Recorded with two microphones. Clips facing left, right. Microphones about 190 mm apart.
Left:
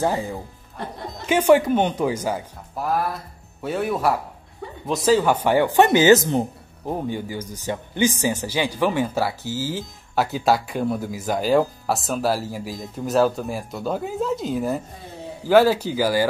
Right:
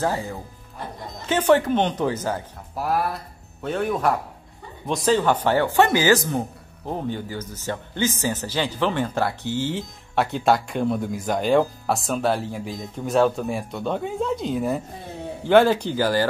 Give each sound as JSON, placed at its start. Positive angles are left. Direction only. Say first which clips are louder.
{"t": 0.0, "sound": "speech", "louder": "left 2 dB", "side_deg": 15}
{"t": 2.7, "sound": "a man's voice", "louder": "even", "side_deg": 0}
{"t": 6.9, "sound": "a man's voice", "louder": "left 1 dB", "side_deg": 10}